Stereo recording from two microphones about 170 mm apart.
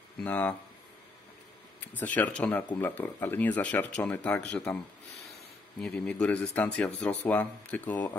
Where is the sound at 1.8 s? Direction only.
10° left (ahead or behind).